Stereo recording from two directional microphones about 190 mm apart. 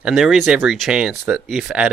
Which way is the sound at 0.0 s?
Centre (ahead or behind).